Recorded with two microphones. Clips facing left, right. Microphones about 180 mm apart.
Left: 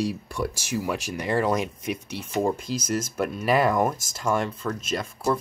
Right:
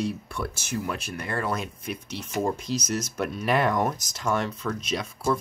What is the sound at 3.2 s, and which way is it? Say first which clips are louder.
Speech: left 2 dB; 5° left (ahead or behind).